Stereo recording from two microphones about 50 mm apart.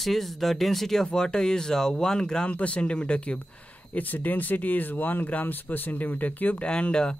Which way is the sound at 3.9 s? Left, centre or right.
Left.